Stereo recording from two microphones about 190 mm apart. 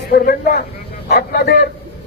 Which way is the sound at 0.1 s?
50° left (ahead or behind).